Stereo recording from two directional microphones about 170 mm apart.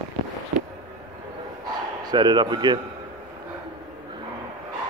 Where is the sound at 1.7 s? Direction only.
25° right (ahead or behind).